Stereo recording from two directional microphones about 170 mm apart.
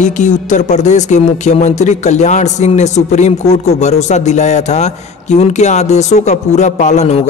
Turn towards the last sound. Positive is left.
turn(degrees=40)  # may be behind; listen again after turning